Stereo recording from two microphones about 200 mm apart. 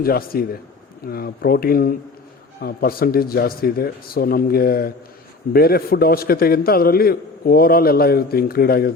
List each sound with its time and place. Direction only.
0.0 s a man's voice: 50° left (ahead or behind)